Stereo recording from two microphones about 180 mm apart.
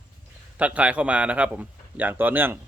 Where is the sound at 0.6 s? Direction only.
5° right (ahead or behind).